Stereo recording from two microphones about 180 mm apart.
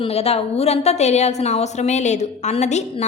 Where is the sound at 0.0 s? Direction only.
35° left (ahead or behind).